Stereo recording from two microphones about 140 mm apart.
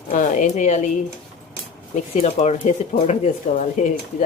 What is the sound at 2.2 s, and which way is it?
Speech, 55° left (ahead or behind).